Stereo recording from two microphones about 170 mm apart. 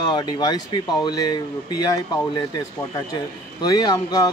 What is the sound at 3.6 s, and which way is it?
Speech, 20° left (ahead or behind).